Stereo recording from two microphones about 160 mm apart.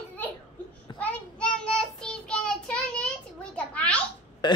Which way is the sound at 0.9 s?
5° left (ahead or behind).